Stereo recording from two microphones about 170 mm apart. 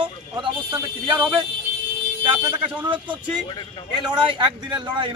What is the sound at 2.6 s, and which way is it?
Speech, 10° right (ahead or behind).